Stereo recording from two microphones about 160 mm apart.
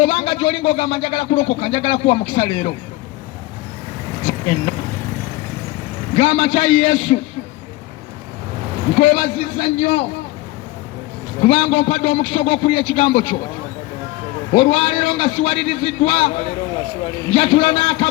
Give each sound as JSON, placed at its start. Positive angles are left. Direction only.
{"t": 0.0, "sound": "a man's voice", "side_deg": 40}
{"t": 4.3, "sound": "speech", "side_deg": 40}
{"t": 6.1, "sound": "a man's voice", "side_deg": 40}
{"t": 9.0, "sound": "a man's voice", "side_deg": 40}
{"t": 11.4, "sound": "a man's voice", "side_deg": 40}
{"t": 14.5, "sound": "a man's voice", "side_deg": 35}
{"t": 17.3, "sound": "a man's voice", "side_deg": 40}